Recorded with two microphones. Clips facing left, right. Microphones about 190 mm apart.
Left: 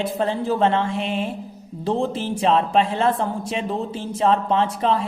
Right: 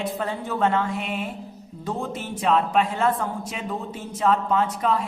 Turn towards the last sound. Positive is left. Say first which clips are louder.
# left 2 dB
turn(degrees=25)  # may be behind; listen again after turning